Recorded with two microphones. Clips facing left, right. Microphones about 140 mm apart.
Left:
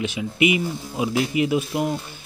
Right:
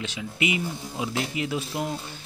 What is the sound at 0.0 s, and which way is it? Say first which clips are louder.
Speech: left 8 dB; 15° left (ahead or behind).